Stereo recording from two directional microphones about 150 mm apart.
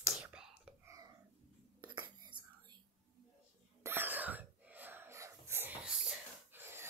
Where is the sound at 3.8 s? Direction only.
15° right (ahead or behind).